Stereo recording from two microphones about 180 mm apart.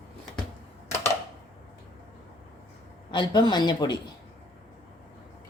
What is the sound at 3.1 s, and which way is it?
Speech, 25° left (ahead or behind).